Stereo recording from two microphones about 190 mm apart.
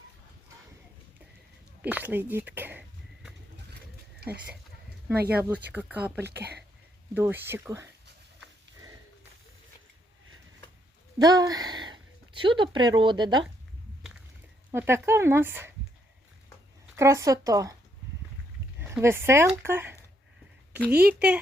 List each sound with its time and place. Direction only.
1.8 s speech: 10° right (ahead or behind)
5.4 s speech: 10° right (ahead or behind)
6.2 s speech: 60° right (ahead or behind)
7.1 s speech: 10° right (ahead or behind)
11.2 s a woman's voice: 20° right (ahead or behind)
14.7 s speech: 15° right (ahead or behind)
17.0 s speech: 15° right (ahead or behind)
18.8 s speech: 10° right (ahead or behind)